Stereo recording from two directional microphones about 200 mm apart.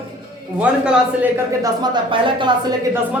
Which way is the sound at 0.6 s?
5° right (ahead or behind).